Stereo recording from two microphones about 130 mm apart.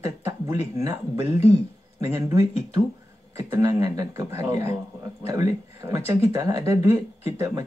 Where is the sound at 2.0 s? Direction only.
20° right (ahead or behind).